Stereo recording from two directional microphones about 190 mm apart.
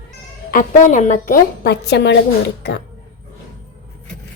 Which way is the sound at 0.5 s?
40° left (ahead or behind).